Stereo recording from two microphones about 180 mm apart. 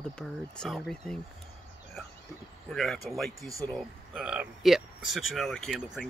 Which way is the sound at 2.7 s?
Centre (ahead or behind).